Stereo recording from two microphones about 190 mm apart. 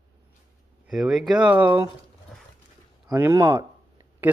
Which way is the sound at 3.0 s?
15° right (ahead or behind).